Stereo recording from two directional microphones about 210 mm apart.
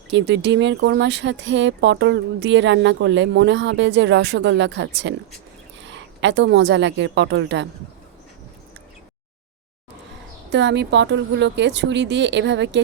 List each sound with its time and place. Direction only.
0.1 s a woman's voice: 55° right (ahead or behind)
10.5 s speech: 55° right (ahead or behind)